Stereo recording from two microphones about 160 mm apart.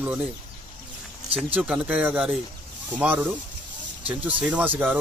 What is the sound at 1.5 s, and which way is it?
Speech, 10° right (ahead or behind).